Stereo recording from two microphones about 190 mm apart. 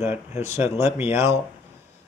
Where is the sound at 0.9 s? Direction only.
30° left (ahead or behind).